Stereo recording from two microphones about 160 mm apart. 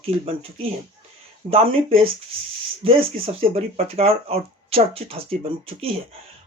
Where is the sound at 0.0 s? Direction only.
35° right (ahead or behind).